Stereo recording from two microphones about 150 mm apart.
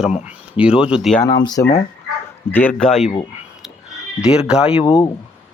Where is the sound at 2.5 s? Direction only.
10° left (ahead or behind).